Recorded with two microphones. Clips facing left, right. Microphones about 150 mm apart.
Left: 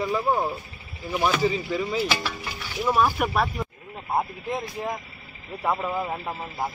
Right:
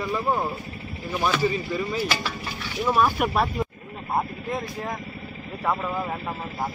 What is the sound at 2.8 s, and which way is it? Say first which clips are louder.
Speech: even; 5° left (ahead or behind).